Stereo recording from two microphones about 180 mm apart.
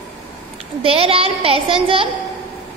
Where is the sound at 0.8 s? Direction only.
30° right (ahead or behind).